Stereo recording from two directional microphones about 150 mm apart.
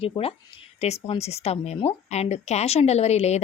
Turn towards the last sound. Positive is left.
turn(degrees=45)  # may be behind; listen again after turning